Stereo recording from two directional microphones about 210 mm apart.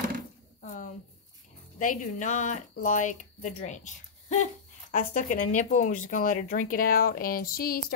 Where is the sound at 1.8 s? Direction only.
40° left (ahead or behind).